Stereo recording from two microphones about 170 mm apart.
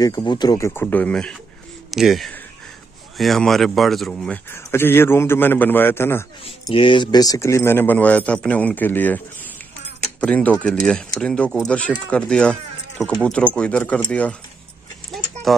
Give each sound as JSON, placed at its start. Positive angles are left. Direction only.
{"t": 0.0, "sound": "speech", "side_deg": 25}
{"t": 6.6, "sound": "speech", "side_deg": 30}
{"t": 10.2, "sound": "speech", "side_deg": 10}
{"t": 15.5, "sound": "speech", "side_deg": 0}